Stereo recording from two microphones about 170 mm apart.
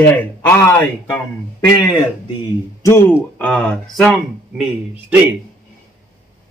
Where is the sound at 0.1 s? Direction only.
10° left (ahead or behind).